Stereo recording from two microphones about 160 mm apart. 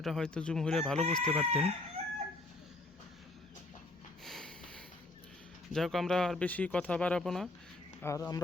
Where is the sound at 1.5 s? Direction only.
40° right (ahead or behind).